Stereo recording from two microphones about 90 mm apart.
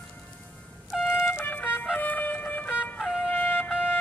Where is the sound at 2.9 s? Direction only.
Centre (ahead or behind).